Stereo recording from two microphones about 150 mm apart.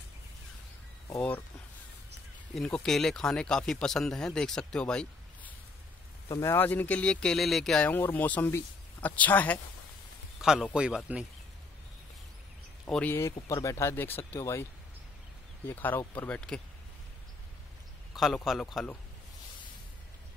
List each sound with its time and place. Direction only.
2.5 s speech: 5° left (ahead or behind)
10.4 s speech: 5° right (ahead or behind)
12.8 s speech: 10° left (ahead or behind)
18.1 s speech: centre (ahead or behind)